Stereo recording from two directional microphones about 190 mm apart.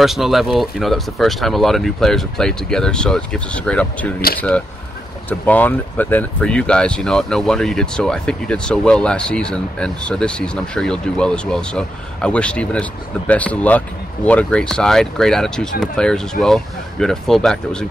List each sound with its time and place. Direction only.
0.0 s speech: centre (ahead or behind)